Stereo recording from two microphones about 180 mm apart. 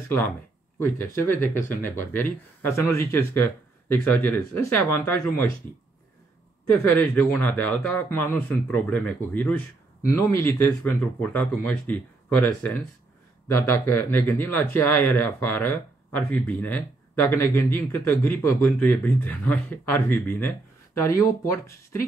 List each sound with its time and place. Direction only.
0.7 s speech: 15° left (ahead or behind)
6.7 s speech: 10° left (ahead or behind)